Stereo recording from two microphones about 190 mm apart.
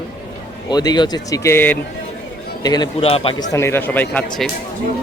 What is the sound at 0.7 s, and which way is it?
Speech, 20° left (ahead or behind).